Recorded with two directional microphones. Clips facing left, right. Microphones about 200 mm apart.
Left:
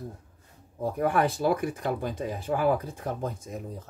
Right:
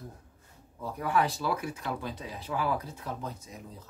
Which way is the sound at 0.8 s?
50° left (ahead or behind).